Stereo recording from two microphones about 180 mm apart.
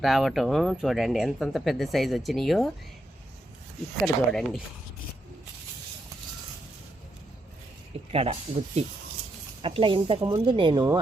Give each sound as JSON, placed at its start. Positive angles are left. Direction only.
{"t": 0.0, "sound": "speech", "side_deg": 0}
{"t": 4.0, "sound": "speech", "side_deg": 0}
{"t": 8.1, "sound": "speech", "side_deg": -35}